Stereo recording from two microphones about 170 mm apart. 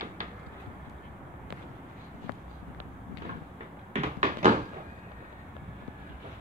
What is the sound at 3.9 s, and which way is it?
Cupboard open or close, 40° right (ahead or behind).